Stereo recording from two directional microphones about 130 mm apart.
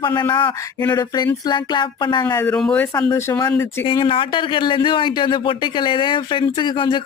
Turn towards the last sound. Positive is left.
turn(degrees=35)  # may be behind; listen again after turning